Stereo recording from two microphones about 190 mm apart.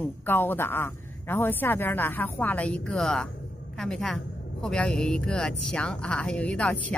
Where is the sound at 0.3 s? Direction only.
10° left (ahead or behind).